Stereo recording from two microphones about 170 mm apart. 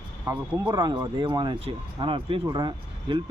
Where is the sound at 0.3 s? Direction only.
15° right (ahead or behind).